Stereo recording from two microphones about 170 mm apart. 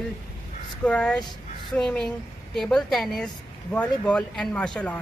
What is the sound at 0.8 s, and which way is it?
A man's voice, 5° left (ahead or behind).